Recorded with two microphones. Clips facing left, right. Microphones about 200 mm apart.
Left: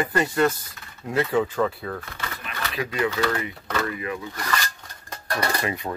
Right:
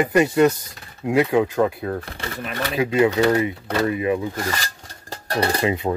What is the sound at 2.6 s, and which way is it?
Speech, 25° right (ahead or behind).